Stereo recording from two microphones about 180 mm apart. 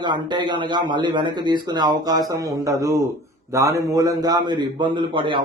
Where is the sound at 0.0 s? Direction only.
25° right (ahead or behind).